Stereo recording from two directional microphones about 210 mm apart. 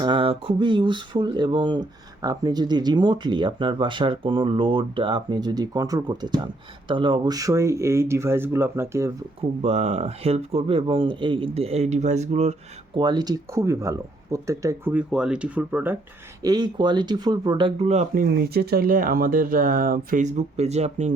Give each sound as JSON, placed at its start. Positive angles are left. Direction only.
{"t": 0.0, "sound": "speech", "side_deg": -25}
{"t": 9.6, "sound": "speech", "side_deg": -30}
{"t": 13.0, "sound": "speech", "side_deg": -20}
{"t": 16.4, "sound": "speech", "side_deg": -20}
{"t": 17.8, "sound": "speech", "side_deg": -35}